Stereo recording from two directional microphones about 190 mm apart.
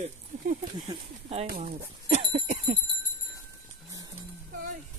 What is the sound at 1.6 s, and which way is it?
Dog, 35° right (ahead or behind).